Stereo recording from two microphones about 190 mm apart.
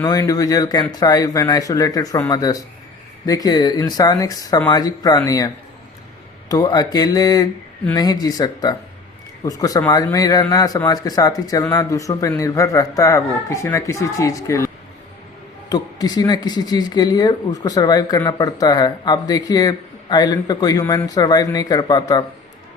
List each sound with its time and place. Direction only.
0.0 s speech: 15° left (ahead or behind)
6.5 s speech: 20° left (ahead or behind)
15.7 s speech: 20° left (ahead or behind)